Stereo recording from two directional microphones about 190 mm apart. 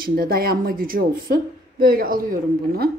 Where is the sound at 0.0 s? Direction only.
50° right (ahead or behind).